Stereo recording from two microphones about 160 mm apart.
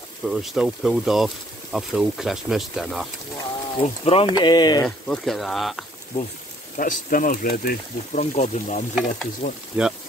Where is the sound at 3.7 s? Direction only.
35° left (ahead or behind).